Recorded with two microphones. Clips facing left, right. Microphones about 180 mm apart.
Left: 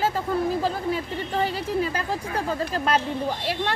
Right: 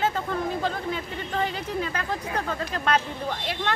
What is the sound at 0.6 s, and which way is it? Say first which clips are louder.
Speech: left 3 dB; 35° left (ahead or behind).